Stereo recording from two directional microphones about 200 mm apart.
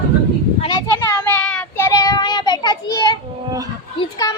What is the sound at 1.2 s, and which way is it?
Child singing, 5° left (ahead or behind).